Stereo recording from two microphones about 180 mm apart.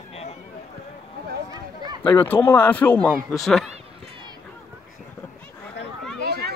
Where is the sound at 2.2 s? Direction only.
10° left (ahead or behind).